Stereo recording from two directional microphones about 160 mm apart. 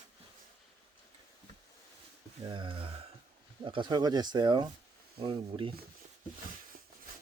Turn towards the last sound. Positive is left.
turn(degrees=-30)  # may be behind; listen again after turning